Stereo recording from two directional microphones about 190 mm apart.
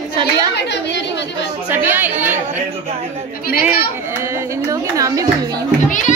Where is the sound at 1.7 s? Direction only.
10° right (ahead or behind).